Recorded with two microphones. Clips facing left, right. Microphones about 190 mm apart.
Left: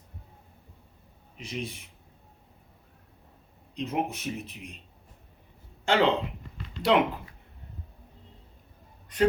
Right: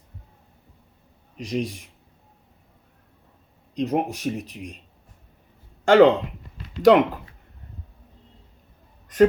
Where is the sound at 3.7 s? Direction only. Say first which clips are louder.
Right 6 dB; 40° right (ahead or behind).